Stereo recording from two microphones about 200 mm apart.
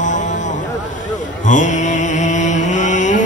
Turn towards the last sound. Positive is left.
turn(degrees=35)  # may be behind; listen again after turning